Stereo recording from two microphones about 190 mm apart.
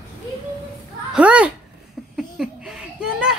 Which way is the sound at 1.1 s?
5° right (ahead or behind).